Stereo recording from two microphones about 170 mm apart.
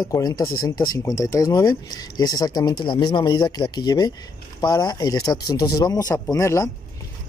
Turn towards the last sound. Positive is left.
turn(degrees=15)  # may be behind; listen again after turning